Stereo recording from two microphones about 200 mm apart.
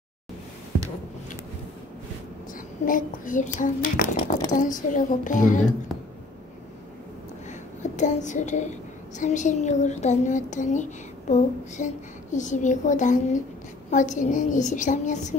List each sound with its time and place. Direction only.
2.8 s a child's voice: 45° left (ahead or behind)
7.8 s a child's voice: 35° left (ahead or behind)